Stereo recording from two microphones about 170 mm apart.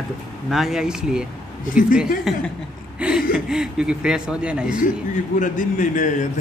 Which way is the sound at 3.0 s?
5° right (ahead or behind).